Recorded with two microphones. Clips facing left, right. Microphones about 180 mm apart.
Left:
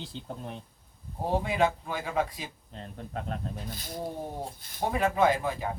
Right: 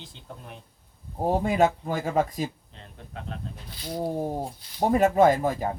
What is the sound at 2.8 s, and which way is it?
Speech, 45° left (ahead or behind).